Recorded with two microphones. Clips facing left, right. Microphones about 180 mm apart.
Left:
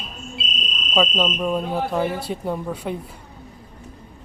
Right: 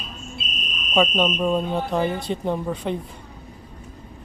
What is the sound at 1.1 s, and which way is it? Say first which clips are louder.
Speech: right 1 dB; 20° right (ahead or behind).